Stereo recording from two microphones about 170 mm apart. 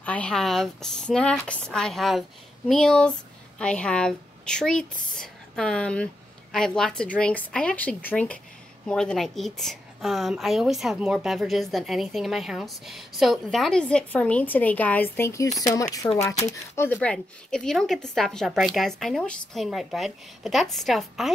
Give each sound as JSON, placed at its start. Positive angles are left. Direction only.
{"t": 0.0, "sound": "a woman's voice", "side_deg": 10}